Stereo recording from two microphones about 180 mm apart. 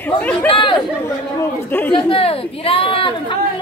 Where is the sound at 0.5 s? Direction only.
25° left (ahead or behind).